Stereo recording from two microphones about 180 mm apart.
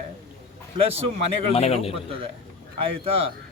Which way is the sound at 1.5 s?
35° left (ahead or behind).